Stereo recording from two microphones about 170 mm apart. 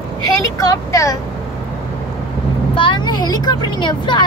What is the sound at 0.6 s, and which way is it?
Speech, 20° left (ahead or behind).